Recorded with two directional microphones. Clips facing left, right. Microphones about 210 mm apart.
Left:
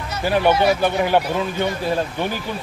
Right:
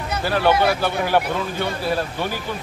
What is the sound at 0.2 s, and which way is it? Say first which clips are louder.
Speech: left 2 dB; 15° left (ahead or behind).